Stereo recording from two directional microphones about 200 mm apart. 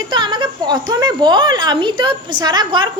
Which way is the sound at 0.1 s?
20° right (ahead or behind).